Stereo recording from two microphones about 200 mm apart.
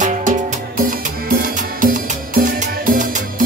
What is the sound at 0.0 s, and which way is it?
Music, 40° right (ahead or behind).